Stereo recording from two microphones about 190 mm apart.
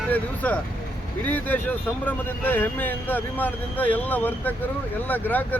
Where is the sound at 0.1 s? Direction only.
10° left (ahead or behind).